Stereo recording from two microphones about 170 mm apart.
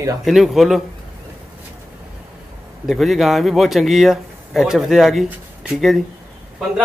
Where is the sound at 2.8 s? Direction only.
Centre (ahead or behind).